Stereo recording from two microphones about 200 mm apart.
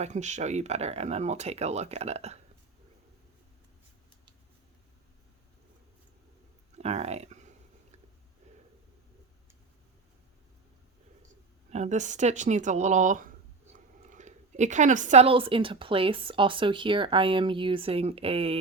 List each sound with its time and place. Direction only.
0.0 s speech: 35° right (ahead or behind)
6.7 s a sound: 35° right (ahead or behind)
11.7 s speech: 35° right (ahead or behind)